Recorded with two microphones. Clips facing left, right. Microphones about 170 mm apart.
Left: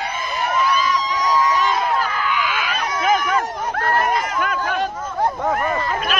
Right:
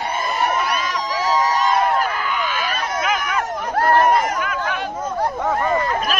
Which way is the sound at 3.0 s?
35° left (ahead or behind).